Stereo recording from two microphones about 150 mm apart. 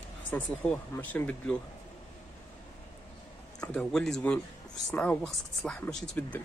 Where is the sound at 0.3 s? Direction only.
15° left (ahead or behind).